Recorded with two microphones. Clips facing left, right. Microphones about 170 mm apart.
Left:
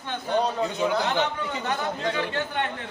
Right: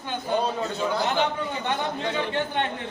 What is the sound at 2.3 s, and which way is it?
Speech, 20° right (ahead or behind).